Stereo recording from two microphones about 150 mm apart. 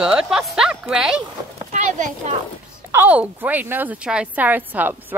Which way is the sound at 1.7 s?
50° right (ahead or behind).